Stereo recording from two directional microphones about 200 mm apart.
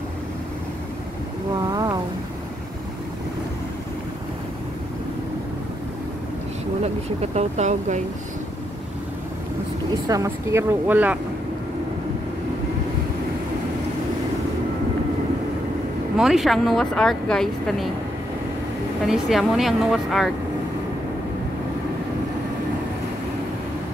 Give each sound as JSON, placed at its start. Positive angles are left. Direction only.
{"t": 1.7, "sound": "a sound", "side_deg": -15}
{"t": 6.8, "sound": "speech", "side_deg": -35}
{"t": 10.0, "sound": "speech", "side_deg": -15}
{"t": 16.2, "sound": "speech", "side_deg": 0}
{"t": 19.0, "sound": "speech", "side_deg": 0}